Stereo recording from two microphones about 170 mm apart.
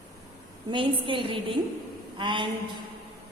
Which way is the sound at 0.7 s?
30° right (ahead or behind).